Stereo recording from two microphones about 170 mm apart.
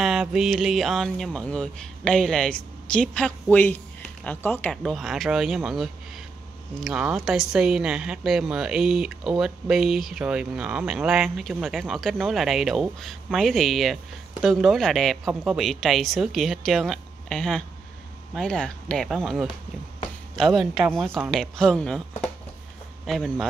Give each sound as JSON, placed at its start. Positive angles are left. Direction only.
{"t": 0.0, "sound": "a woman's voice", "side_deg": -5}